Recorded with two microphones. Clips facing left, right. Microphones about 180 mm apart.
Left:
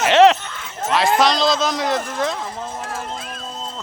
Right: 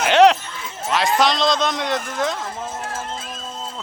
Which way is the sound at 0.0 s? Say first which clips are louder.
Left 1 dB; centre (ahead or behind).